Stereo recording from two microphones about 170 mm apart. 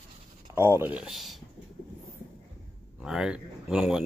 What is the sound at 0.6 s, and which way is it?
Speech, 15° right (ahead or behind).